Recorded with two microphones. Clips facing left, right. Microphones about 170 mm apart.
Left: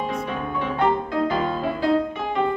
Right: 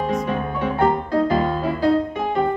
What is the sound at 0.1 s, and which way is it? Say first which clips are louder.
Music: right 4 dB; 40° right (ahead or behind).